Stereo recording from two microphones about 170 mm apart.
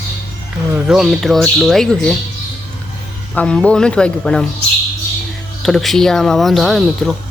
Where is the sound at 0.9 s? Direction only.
Centre (ahead or behind).